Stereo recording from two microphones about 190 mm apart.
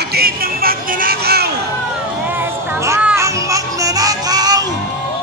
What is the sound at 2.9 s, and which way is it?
Children playing, 10° right (ahead or behind).